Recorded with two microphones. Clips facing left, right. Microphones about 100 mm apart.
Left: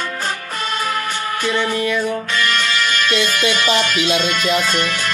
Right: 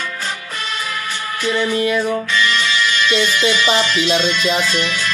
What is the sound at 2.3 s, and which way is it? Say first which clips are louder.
Music: right 1 dB; 45° left (ahead or behind).